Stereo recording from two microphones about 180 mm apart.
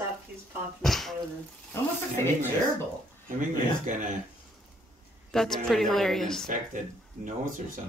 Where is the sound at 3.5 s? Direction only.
45° right (ahead or behind).